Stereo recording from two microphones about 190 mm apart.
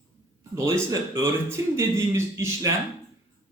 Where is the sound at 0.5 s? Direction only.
15° right (ahead or behind).